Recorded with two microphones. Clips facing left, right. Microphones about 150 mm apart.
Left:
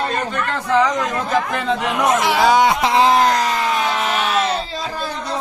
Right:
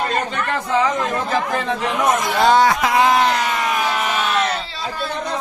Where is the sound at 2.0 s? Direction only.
90° left.